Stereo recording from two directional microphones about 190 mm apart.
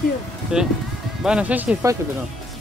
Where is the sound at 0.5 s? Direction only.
5° right (ahead or behind).